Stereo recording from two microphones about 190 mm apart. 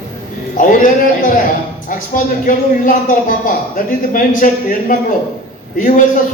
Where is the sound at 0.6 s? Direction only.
45° left (ahead or behind).